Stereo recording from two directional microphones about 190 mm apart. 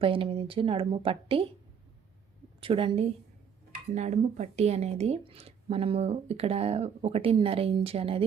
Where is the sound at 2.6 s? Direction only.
25° right (ahead or behind).